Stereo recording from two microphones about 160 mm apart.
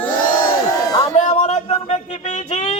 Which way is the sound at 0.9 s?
20° left (ahead or behind).